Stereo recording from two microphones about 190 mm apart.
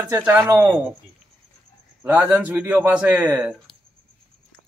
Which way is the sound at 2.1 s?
10° right (ahead or behind).